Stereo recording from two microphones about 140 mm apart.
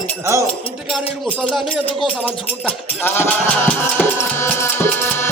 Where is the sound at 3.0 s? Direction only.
15° left (ahead or behind).